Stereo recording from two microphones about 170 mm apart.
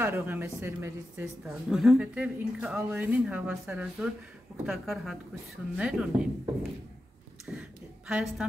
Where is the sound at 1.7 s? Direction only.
Centre (ahead or behind).